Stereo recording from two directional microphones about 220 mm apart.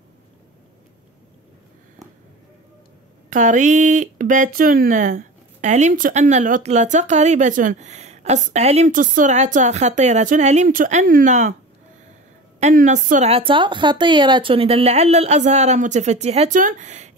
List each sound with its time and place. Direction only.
3.3 s speech: 35° right (ahead or behind)
12.5 s speech: 35° right (ahead or behind)